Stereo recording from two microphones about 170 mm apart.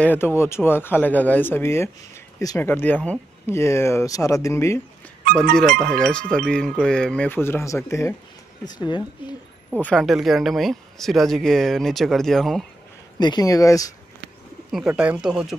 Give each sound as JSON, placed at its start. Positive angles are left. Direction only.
{"t": 0.0, "sound": "speech", "side_deg": 10}
{"t": 5.6, "sound": "speech", "side_deg": 5}
{"t": 9.8, "sound": "speech", "side_deg": 5}
{"t": 13.2, "sound": "speech", "side_deg": 25}
{"t": 14.7, "sound": "speech", "side_deg": -5}